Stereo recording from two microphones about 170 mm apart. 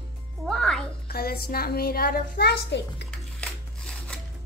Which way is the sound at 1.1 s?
65° left (ahead or behind).